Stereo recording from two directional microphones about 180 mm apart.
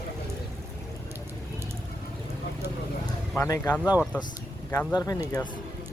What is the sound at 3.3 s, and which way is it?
Speech, 15° left (ahead or behind).